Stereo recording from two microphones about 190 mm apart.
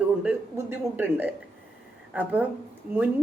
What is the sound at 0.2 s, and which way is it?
Speech, 10° right (ahead or behind).